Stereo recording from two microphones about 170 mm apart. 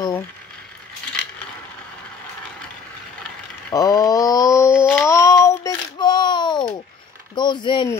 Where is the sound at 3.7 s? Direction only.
20° left (ahead or behind).